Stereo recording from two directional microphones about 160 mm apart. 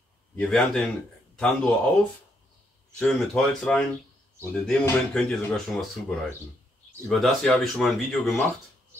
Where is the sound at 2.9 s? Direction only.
5° left (ahead or behind).